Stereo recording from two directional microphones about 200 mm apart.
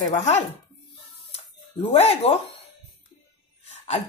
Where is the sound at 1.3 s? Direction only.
30° left (ahead or behind).